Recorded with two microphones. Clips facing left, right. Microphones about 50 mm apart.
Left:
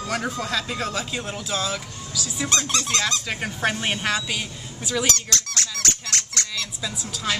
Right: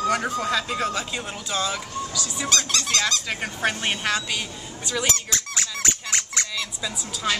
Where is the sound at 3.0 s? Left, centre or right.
Centre.